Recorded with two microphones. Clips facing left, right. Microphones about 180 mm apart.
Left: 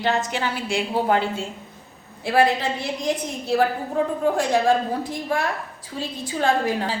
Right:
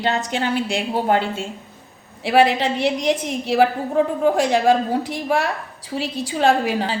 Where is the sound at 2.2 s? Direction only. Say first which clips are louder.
Right 3 dB; 80° right.